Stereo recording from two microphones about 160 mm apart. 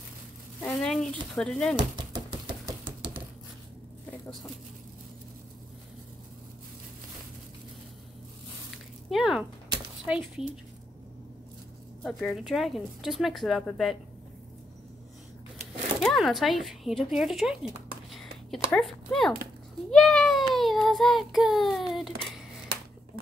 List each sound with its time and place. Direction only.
0.6 s speech: 5° left (ahead or behind)
2.0 s typewriter: 25° right (ahead or behind)
9.1 s a sound: 5° right (ahead or behind)
10.0 s speech: 5° right (ahead or behind)
12.0 s speech: centre (ahead or behind)
16.0 s speech: centre (ahead or behind)
19.9 s a sound: 5° left (ahead or behind)
20.5 s child singing: centre (ahead or behind)